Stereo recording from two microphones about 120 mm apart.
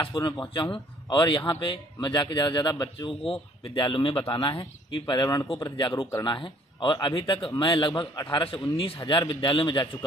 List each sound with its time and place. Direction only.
0.0 s a man's voice: 40° left (ahead or behind)